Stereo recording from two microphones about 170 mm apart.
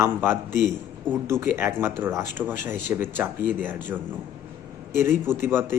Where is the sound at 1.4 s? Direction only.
10° right (ahead or behind).